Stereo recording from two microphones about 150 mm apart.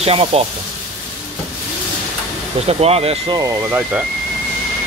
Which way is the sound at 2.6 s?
45° right (ahead or behind).